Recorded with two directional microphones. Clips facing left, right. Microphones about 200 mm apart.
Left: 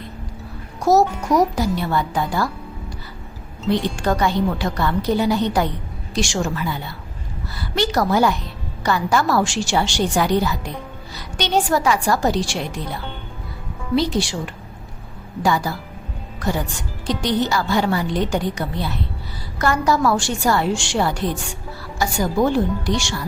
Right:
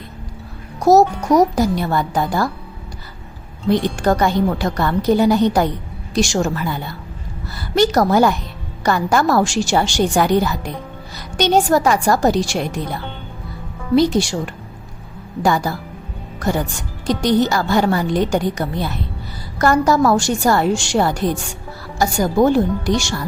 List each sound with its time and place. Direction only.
0.8 s a woman's voice: 40° right (ahead or behind)
3.7 s a woman's voice: 45° right (ahead or behind)
13.9 s a woman's voice: 45° right (ahead or behind)
17.1 s a woman's voice: 45° right (ahead or behind)